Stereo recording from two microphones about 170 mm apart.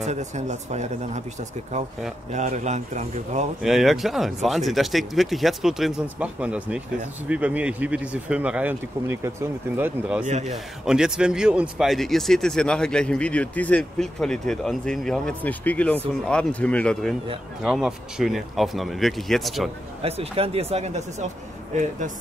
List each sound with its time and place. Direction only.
0.0 s speech: 45° right (ahead or behind)
2.3 s speech: 45° right (ahead or behind)
3.6 s speech: centre (ahead or behind)
10.2 s speech: 40° right (ahead or behind)
10.5 s speech: 5° right (ahead or behind)
20.0 s speech: 35° right (ahead or behind)